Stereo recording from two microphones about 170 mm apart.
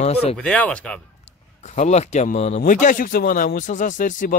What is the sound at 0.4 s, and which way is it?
Speech, 5° left (ahead or behind).